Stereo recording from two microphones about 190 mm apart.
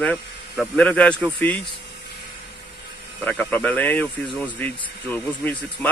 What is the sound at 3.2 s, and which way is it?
Speech, 10° left (ahead or behind).